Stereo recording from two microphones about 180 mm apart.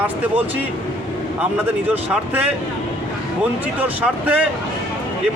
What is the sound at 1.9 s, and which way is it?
Speech, 10° right (ahead or behind).